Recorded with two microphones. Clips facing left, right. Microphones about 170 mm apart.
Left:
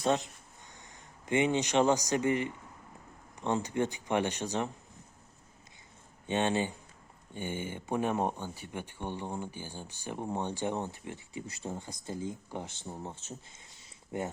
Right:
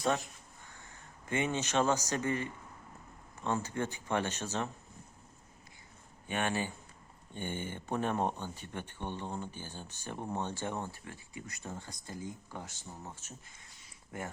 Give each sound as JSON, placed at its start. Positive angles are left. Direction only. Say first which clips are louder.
{"t": 0.7, "sound": "a man's voice", "louder": "left 2 dB", "side_deg": 15}
{"t": 6.2, "sound": "speech", "louder": "left 5 dB", "side_deg": 20}
{"t": 7.3, "sound": "speech", "louder": "left 2 dB", "side_deg": 10}